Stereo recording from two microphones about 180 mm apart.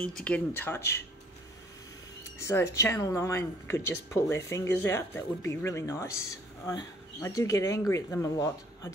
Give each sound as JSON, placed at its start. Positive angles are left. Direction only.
{"t": 0.0, "sound": "speech", "side_deg": 5}
{"t": 2.4, "sound": "speech", "side_deg": 15}